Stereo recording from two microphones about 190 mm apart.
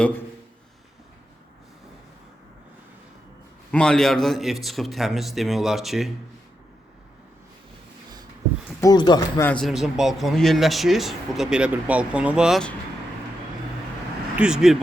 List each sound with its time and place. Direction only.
3.7 s speech: 5° left (ahead or behind)
8.8 s speech: 20° left (ahead or behind)
9.5 s speech: centre (ahead or behind)
14.3 s speech: 5° right (ahead or behind)